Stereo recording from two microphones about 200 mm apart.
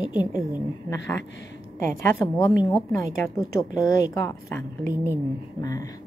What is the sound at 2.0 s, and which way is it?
Speech, 15° left (ahead or behind).